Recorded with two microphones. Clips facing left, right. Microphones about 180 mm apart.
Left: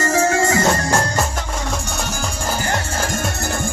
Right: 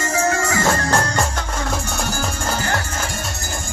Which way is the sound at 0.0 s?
40° left (ahead or behind).